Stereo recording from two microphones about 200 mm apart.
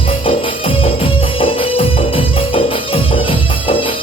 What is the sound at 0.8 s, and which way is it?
Music, 25° left (ahead or behind).